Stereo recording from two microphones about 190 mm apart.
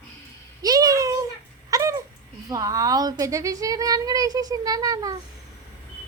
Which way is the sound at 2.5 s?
20° right (ahead or behind).